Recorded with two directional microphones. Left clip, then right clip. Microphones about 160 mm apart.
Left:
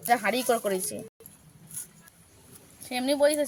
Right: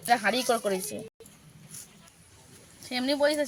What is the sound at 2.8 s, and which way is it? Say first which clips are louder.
Speech: left 2 dB; 60° left (ahead or behind).